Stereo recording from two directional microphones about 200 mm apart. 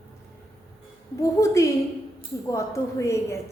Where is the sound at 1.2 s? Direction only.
15° left (ahead or behind).